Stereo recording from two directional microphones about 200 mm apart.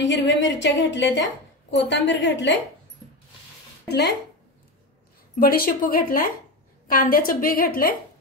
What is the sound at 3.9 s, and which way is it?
Speech, 55° left (ahead or behind).